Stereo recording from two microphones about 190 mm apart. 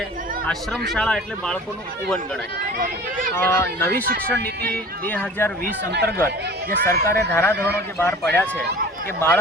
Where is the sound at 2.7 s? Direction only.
45° right (ahead or behind).